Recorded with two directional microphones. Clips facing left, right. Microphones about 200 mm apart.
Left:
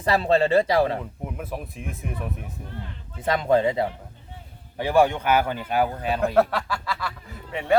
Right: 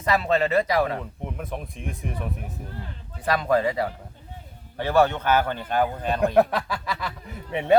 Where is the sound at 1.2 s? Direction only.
5° left (ahead or behind).